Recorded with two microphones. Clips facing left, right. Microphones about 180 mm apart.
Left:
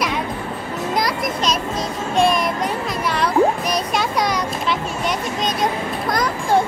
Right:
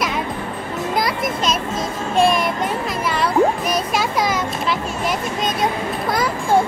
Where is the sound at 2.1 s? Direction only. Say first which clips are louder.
Right 1 dB; centre (ahead or behind).